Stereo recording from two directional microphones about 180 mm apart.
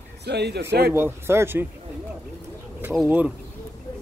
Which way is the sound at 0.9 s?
15° right (ahead or behind).